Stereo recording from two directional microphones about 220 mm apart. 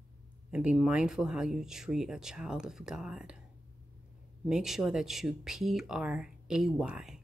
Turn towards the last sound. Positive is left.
turn(degrees=-5)  # may be behind; listen again after turning